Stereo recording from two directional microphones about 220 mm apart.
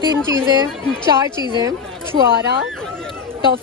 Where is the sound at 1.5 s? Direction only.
20° right (ahead or behind).